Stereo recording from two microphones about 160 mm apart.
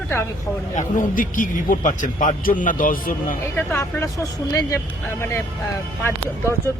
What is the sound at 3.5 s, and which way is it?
A man's voice, 15° left (ahead or behind).